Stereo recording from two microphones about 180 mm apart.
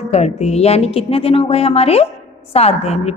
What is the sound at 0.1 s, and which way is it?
Speech, 35° left (ahead or behind).